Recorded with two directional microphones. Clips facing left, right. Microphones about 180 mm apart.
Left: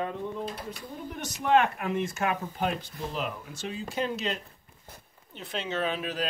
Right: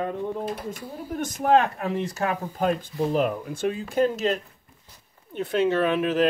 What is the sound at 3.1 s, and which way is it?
Speech, 50° right (ahead or behind).